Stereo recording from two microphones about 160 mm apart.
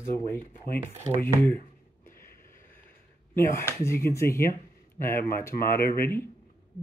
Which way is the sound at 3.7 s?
15° left (ahead or behind).